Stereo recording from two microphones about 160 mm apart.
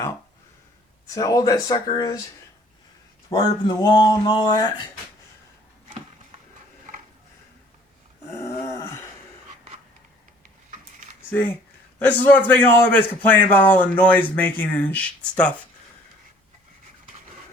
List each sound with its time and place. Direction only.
1.1 s speech: 20° left (ahead or behind)
3.2 s speech: 25° left (ahead or behind)
8.4 s a sound: 20° left (ahead or behind)
11.9 s a man's voice: 10° left (ahead or behind)